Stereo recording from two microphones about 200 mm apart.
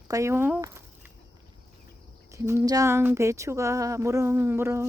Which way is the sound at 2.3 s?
15° right (ahead or behind).